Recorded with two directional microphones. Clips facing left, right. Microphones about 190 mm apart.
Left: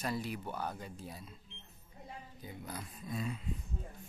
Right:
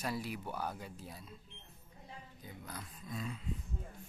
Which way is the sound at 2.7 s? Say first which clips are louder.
Left 3 dB; 15° left (ahead or behind).